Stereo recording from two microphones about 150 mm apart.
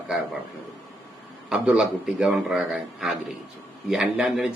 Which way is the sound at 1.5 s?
5° right (ahead or behind).